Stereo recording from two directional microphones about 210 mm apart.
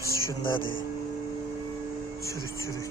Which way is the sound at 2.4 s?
15° right (ahead or behind).